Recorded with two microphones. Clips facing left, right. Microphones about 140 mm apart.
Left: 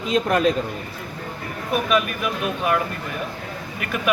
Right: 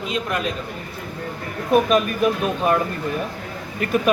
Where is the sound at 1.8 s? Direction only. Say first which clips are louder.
Right 4 dB; 35° right (ahead or behind).